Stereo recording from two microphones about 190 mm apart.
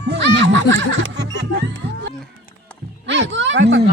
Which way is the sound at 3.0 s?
70° right (ahead or behind).